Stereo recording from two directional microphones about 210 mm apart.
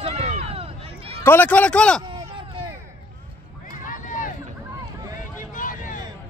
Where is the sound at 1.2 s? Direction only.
10° left (ahead or behind).